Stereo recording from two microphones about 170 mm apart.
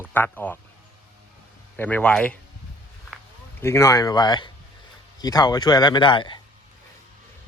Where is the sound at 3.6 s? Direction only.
15° left (ahead or behind).